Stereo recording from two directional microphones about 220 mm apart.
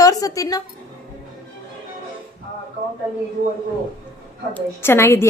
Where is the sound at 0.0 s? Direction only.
15° left (ahead or behind).